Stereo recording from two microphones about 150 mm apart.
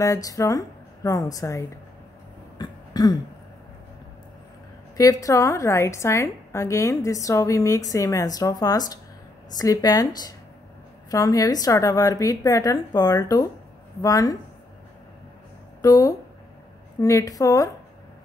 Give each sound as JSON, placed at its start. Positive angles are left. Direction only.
{"t": 0.0, "sound": "a woman's voice", "side_deg": 20}
{"t": 2.6, "sound": "throat clearing", "side_deg": 25}
{"t": 4.9, "sound": "a woman's voice", "side_deg": 25}
{"t": 15.8, "sound": "a woman's voice", "side_deg": 20}